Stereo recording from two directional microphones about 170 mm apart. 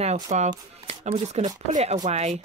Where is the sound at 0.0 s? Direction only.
40° right (ahead or behind).